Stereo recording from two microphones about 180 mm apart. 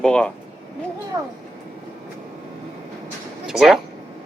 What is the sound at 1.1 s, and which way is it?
Speech, 15° right (ahead or behind).